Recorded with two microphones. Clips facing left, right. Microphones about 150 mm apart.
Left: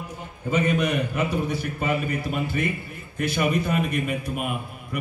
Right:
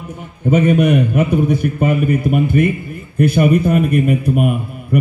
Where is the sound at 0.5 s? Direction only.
55° right (ahead or behind).